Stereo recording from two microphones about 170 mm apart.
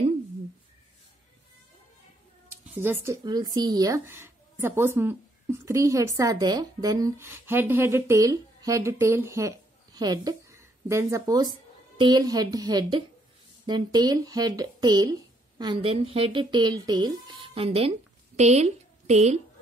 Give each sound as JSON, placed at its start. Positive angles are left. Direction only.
{"t": 2.8, "sound": "a woman's voice", "side_deg": -15}